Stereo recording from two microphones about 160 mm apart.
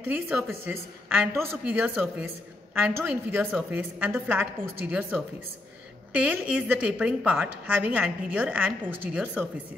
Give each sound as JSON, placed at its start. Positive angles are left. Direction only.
{"t": 0.1, "sound": "a woman's voice", "side_deg": -10}